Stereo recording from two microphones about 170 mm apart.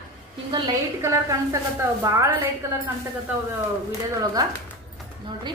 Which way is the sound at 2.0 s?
20° right (ahead or behind).